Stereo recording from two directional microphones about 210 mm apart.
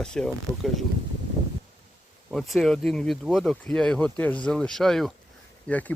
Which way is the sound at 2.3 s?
Centre (ahead or behind).